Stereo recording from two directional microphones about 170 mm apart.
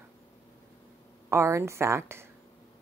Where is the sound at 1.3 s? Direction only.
15° right (ahead or behind).